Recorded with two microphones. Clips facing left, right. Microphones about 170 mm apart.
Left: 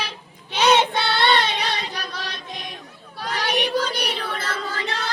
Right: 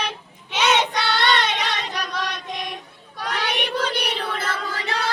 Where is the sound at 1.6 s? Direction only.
35° left (ahead or behind).